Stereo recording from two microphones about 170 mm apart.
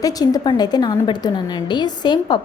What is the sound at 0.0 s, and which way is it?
A woman's voice, 20° left (ahead or behind).